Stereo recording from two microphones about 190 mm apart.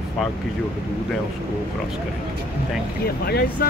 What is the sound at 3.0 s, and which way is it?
Speech, 55° left (ahead or behind).